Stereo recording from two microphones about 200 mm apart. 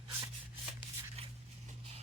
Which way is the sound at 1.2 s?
30° right (ahead or behind).